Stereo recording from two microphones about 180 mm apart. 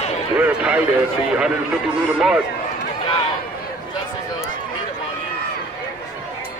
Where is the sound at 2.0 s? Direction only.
5° right (ahead or behind).